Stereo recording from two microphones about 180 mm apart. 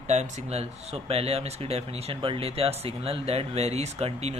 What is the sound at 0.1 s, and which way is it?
Speech, 35° right (ahead or behind).